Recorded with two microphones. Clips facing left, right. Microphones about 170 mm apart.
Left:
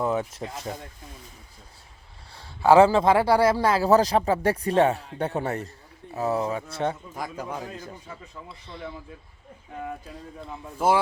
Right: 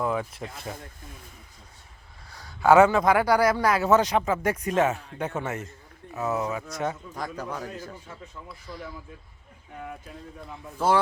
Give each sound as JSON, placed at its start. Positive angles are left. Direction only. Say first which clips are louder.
{"t": 0.0, "sound": "a sound", "louder": "left 2 dB", "side_deg": 25}
{"t": 2.3, "sound": "a man's voice", "louder": "left 1 dB", "side_deg": 30}
{"t": 7.2, "sound": "a man's voice", "louder": "even", "side_deg": 10}
{"t": 8.4, "sound": "speech", "louder": "left 1 dB", "side_deg": 25}
{"t": 10.8, "sound": "a man's voice", "louder": "left 1 dB", "side_deg": 10}